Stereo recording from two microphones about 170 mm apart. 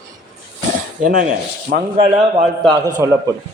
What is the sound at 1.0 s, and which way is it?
Speech, 50° right (ahead or behind).